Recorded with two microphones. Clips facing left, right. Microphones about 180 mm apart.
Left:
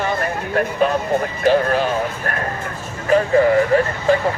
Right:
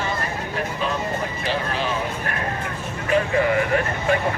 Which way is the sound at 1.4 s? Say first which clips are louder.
Left 11 dB; 45° left (ahead or behind).